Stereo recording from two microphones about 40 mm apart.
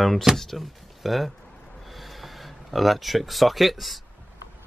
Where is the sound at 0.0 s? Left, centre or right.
Centre.